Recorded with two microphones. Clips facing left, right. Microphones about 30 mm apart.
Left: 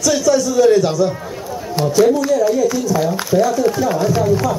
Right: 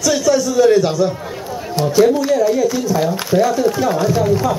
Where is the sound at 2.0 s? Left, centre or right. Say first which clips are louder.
Even; right.